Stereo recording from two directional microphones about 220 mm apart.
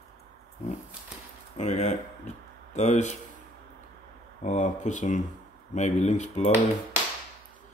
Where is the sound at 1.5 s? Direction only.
30° left (ahead or behind).